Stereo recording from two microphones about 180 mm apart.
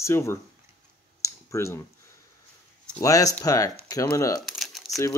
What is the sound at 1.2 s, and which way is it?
Clicking, 15° left (ahead or behind).